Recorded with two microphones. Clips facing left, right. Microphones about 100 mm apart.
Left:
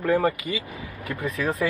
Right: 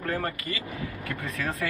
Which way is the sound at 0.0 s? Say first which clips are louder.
Left 8 dB; 15° left (ahead or behind).